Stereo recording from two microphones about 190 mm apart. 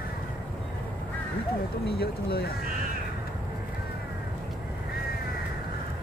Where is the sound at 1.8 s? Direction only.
55° left (ahead or behind).